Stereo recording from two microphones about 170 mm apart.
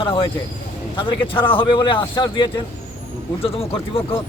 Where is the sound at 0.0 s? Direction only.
30° left (ahead or behind).